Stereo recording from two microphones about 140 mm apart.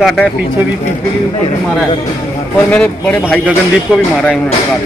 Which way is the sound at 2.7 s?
10° left (ahead or behind).